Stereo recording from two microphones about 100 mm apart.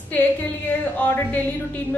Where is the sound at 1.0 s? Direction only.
15° left (ahead or behind).